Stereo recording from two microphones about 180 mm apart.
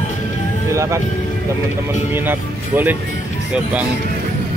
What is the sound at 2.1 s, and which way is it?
Speech, 10° right (ahead or behind).